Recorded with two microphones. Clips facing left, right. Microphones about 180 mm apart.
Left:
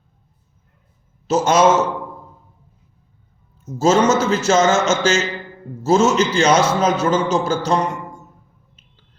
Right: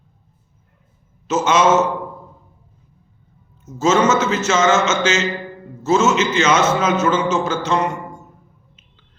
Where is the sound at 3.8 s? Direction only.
40° left (ahead or behind).